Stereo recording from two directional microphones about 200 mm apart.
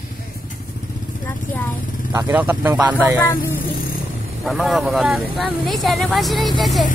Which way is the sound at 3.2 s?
10° left (ahead or behind).